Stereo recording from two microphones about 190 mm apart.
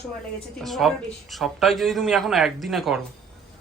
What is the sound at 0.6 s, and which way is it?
A man's voice, centre (ahead or behind).